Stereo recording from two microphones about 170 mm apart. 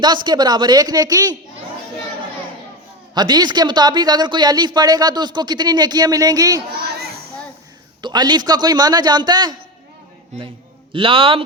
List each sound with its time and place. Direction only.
0.0 s speech: 25° right (ahead or behind)
3.2 s speech: 25° right (ahead or behind)
8.0 s speech: 25° right (ahead or behind)
10.9 s a man's voice: 30° right (ahead or behind)